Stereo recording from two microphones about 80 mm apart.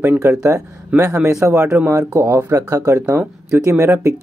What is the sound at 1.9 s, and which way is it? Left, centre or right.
Speech, right.